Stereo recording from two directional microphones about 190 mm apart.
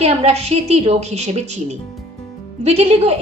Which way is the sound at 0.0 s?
35° right (ahead or behind).